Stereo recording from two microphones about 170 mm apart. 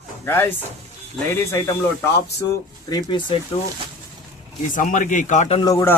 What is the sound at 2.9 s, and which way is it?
Speech, 25° left (ahead or behind).